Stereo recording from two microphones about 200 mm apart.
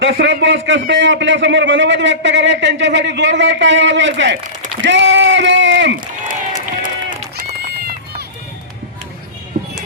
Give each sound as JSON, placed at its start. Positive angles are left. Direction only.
{"t": 0.0, "sound": "a man's voice", "side_deg": -65}
{"t": 4.8, "sound": "a sound", "side_deg": -65}
{"t": 6.8, "sound": "run", "side_deg": -45}